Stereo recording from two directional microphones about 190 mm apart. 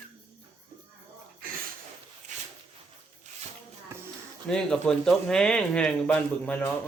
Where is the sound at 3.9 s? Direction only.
10° right (ahead or behind).